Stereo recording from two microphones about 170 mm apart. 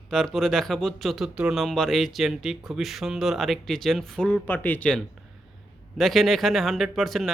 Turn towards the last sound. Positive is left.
turn(degrees=0)  # may be behind; listen again after turning